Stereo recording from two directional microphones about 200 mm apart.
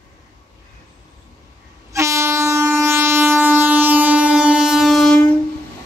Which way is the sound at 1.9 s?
15° right (ahead or behind).